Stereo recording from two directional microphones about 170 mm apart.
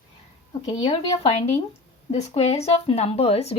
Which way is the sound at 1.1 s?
35° left (ahead or behind).